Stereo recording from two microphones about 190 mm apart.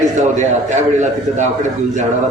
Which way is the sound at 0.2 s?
40° right (ahead or behind).